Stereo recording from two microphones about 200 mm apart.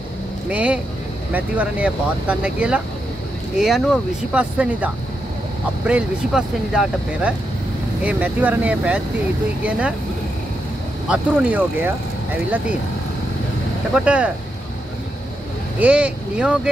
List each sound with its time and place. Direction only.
0.5 s speech: 5° right (ahead or behind)
11.1 s speech: 5° right (ahead or behind)
13.9 s speech: 5° right (ahead or behind)
15.8 s speech: 5° right (ahead or behind)